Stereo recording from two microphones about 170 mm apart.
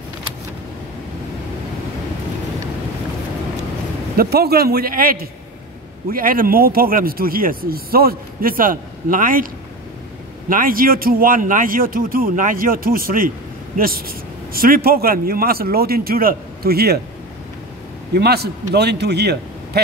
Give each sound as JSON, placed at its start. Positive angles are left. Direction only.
{"t": 4.2, "sound": "speech", "side_deg": -65}
{"t": 10.5, "sound": "speech", "side_deg": -55}
{"t": 18.1, "sound": "a man's voice", "side_deg": -70}